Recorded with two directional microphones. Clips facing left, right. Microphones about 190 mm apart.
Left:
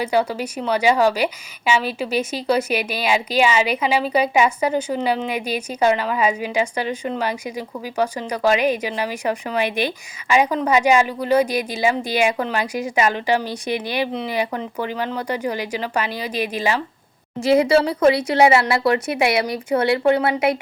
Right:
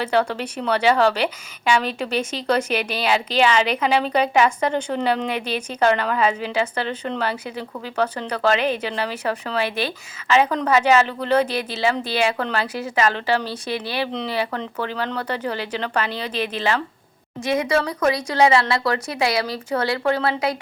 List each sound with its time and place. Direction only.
0.0 s a woman's voice: 10° left (ahead or behind)
17.4 s speech: 30° left (ahead or behind)